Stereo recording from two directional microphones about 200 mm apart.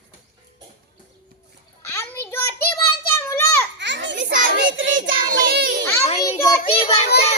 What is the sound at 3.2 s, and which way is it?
Children playing, 10° left (ahead or behind).